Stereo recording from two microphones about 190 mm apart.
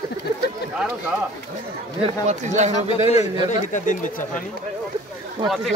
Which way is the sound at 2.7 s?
30° left (ahead or behind).